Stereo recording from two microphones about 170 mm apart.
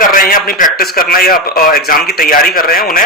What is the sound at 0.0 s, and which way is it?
A man's voice, 55° left (ahead or behind).